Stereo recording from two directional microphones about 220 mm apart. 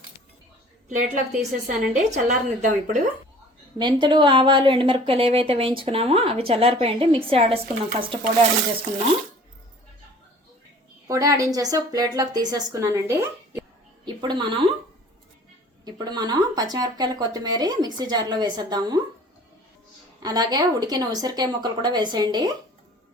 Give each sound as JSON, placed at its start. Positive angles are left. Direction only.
{"t": 0.9, "sound": "speech", "side_deg": -35}
{"t": 3.8, "sound": "speech", "side_deg": -20}
{"t": 11.1, "sound": "a woman's voice", "side_deg": -15}
{"t": 14.2, "sound": "speech", "side_deg": -20}
{"t": 15.8, "sound": "speech", "side_deg": -20}
{"t": 20.2, "sound": "speech", "side_deg": -15}